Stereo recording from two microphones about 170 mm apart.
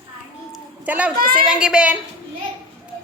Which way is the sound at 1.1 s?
60° right (ahead or behind).